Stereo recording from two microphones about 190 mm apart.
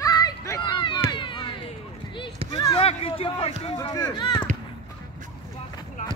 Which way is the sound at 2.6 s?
25° left (ahead or behind).